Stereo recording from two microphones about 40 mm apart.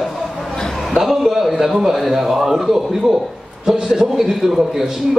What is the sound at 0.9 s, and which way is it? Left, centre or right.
A man's voice, centre.